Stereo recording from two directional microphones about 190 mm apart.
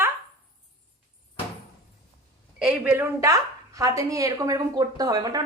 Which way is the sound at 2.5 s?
5° right (ahead or behind).